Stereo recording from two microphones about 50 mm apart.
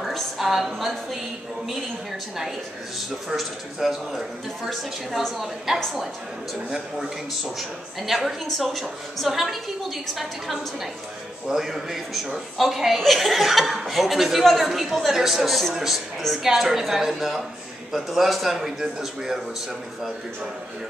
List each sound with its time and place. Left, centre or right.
0.0 s a sound: centre
3.3 s speech: centre
5.7 s speech: centre